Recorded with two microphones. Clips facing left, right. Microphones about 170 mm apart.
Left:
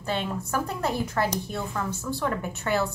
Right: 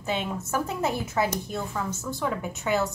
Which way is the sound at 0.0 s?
5° right (ahead or behind).